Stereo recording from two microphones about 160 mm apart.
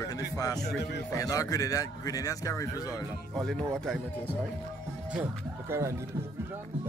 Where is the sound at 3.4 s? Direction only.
Centre (ahead or behind).